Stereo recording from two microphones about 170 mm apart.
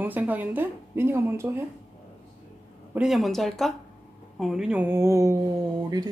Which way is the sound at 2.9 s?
Centre (ahead or behind).